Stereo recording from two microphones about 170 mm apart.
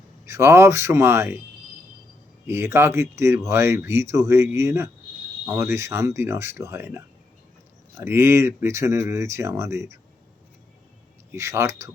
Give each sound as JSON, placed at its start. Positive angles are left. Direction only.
{"t": 0.3, "sound": "speech", "side_deg": -15}
{"t": 2.5, "sound": "speech", "side_deg": -15}
{"t": 11.3, "sound": "speech", "side_deg": -15}